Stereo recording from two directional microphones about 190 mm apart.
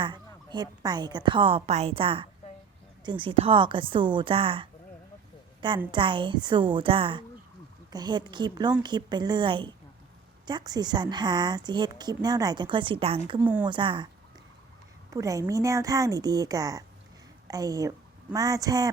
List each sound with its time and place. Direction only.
0.0 s a woman's voice: 25° right (ahead or behind)
13.4 s speech: 5° right (ahead or behind)
13.7 s a woman's voice: 25° right (ahead or behind)
15.1 s a woman's voice: 15° right (ahead or behind)